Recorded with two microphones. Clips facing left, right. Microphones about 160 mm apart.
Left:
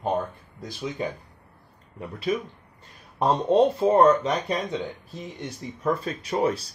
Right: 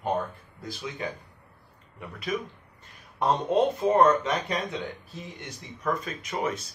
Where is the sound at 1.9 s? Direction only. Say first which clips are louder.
Left 5 dB; 30° left (ahead or behind).